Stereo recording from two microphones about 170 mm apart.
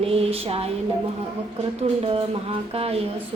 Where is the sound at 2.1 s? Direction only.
35° right (ahead or behind).